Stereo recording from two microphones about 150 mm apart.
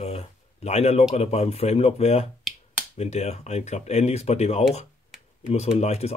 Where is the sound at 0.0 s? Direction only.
45° left (ahead or behind).